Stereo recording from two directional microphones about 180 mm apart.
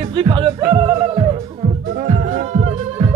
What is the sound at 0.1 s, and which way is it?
Music, 25° right (ahead or behind).